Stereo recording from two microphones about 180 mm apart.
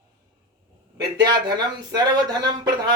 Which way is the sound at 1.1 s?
25° right (ahead or behind).